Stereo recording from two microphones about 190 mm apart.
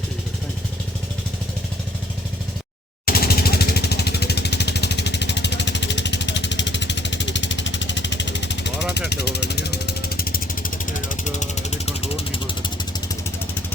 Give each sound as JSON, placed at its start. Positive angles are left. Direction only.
{"t": 3.1, "sound": "vehicle", "side_deg": 55}